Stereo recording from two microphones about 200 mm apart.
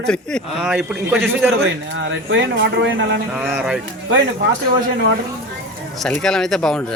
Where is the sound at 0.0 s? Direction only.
5° left (ahead or behind).